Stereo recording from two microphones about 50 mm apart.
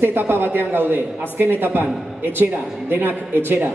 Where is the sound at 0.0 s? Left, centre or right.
Right.